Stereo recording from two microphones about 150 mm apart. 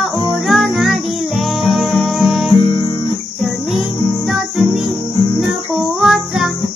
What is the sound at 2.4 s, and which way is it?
Guitar, 30° left (ahead or behind).